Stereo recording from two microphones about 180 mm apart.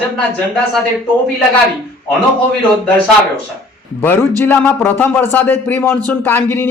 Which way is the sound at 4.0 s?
10° left (ahead or behind).